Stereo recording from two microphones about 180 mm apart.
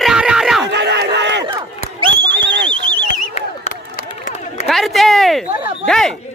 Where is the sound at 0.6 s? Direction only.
75° right (ahead or behind).